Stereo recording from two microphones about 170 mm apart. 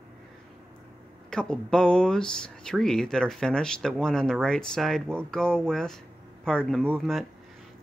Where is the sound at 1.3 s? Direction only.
5° left (ahead or behind).